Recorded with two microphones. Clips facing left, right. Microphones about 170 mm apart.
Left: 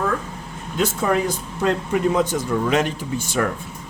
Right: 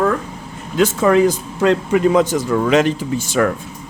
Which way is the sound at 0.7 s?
90° right.